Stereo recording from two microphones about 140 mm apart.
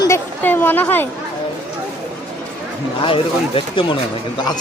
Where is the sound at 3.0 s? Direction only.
40° left (ahead or behind).